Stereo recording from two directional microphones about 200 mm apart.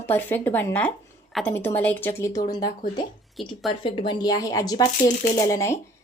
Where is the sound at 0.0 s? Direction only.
10° left (ahead or behind).